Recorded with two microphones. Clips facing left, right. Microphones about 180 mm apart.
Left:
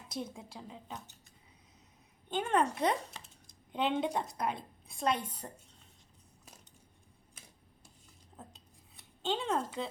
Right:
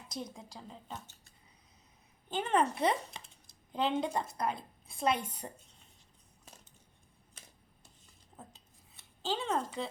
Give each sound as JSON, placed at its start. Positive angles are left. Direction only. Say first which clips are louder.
{"t": 0.1, "sound": "speech", "louder": "left 2 dB", "side_deg": 5}
{"t": 0.9, "sound": "a sound", "louder": "even", "side_deg": 15}
{"t": 2.3, "sound": "a woman's voice", "louder": "even", "side_deg": 0}
{"t": 9.2, "sound": "speech", "louder": "left 1 dB", "side_deg": 0}